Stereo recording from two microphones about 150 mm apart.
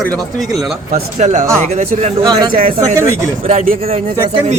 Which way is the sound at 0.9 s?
50° right (ahead or behind).